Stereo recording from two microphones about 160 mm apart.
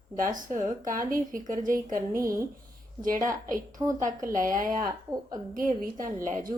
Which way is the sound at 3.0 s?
60° right (ahead or behind).